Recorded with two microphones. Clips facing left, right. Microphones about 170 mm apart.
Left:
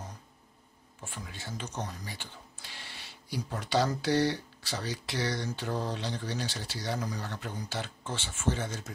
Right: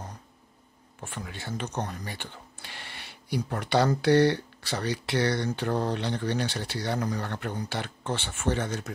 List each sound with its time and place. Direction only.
1.0 s speech: 65° right (ahead or behind)